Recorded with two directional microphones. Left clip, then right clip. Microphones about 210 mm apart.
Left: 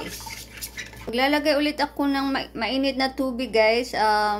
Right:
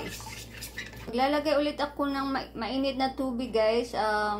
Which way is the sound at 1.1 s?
40° left (ahead or behind).